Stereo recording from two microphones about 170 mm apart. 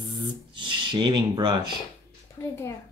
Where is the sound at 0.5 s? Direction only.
30° right (ahead or behind).